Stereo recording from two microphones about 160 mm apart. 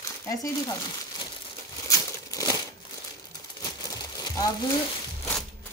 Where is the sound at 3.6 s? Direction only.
25° left (ahead or behind).